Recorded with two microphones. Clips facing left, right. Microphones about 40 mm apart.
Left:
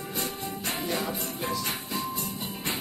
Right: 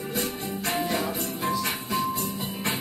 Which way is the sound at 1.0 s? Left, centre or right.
Centre.